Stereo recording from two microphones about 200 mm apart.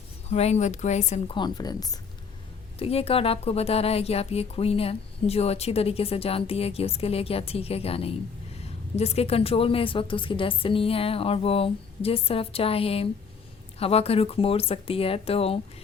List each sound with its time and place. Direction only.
0.3 s a woman's voice: 30° left (ahead or behind)
1.4 s speech: 20° left (ahead or behind)
2.7 s speech: 30° left (ahead or behind)